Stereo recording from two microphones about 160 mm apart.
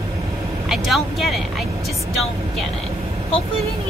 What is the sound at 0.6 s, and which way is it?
Speech, centre (ahead or behind).